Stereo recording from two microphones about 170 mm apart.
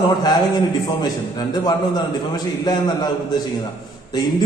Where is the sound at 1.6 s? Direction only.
25° left (ahead or behind).